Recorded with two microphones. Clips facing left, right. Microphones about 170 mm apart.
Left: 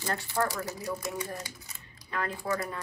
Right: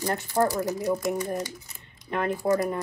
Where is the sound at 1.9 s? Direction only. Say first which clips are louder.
Right 7 dB; 20° right (ahead or behind).